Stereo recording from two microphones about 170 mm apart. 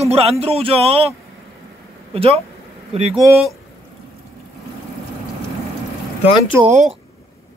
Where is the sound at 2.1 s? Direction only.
35° right (ahead or behind).